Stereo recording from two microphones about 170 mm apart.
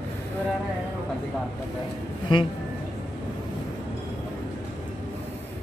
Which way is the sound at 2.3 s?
25° left (ahead or behind).